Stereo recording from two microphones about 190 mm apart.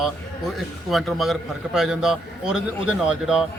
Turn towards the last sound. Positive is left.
turn(degrees=-5)  # may be behind; listen again after turning